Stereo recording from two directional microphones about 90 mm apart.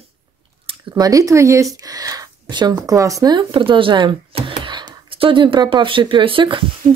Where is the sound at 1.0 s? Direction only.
40° right (ahead or behind).